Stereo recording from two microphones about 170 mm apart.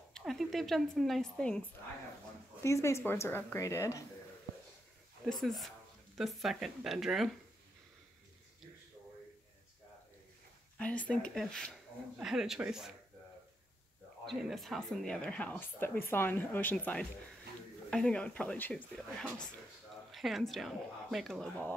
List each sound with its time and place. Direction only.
0.1 s a woman's voice: centre (ahead or behind)
2.6 s speech: 15° left (ahead or behind)
5.2 s speech: centre (ahead or behind)
10.8 s speech: 5° left (ahead or behind)
14.2 s speech: centre (ahead or behind)